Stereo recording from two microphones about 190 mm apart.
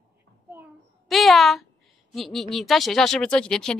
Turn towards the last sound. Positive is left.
turn(degrees=5)  # may be behind; listen again after turning